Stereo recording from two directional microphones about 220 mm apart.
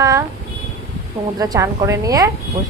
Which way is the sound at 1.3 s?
15° right (ahead or behind).